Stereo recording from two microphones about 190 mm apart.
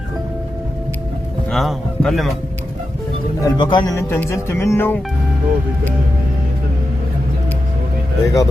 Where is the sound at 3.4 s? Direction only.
25° left (ahead or behind).